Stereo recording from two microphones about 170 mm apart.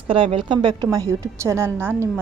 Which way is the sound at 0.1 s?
30° right (ahead or behind).